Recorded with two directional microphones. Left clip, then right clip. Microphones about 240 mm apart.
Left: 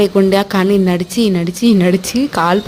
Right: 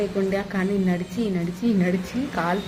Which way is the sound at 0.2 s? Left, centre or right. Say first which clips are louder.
Left 12 dB; left.